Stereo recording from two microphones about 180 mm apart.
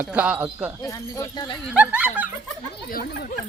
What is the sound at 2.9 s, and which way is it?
Speech, 55° left (ahead or behind).